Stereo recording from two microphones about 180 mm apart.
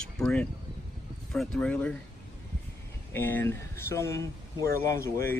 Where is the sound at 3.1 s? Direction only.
10° left (ahead or behind).